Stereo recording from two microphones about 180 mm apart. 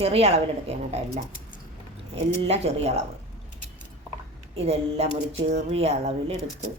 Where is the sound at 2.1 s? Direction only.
35° right (ahead or behind).